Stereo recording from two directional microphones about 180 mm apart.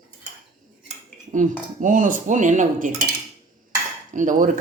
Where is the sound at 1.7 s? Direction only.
45° right (ahead or behind).